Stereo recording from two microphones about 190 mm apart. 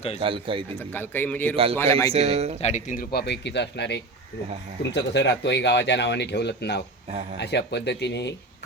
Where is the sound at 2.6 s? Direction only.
40° left (ahead or behind).